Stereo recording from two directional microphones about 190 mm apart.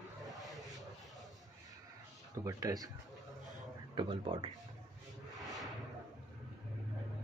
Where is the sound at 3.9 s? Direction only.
25° right (ahead or behind).